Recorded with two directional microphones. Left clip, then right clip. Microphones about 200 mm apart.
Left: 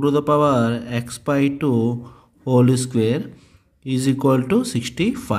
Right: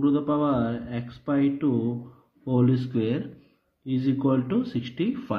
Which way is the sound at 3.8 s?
45° left (ahead or behind).